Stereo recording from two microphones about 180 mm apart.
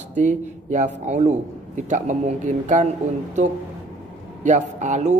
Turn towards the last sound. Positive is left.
turn(degrees=-40)  # may be behind; listen again after turning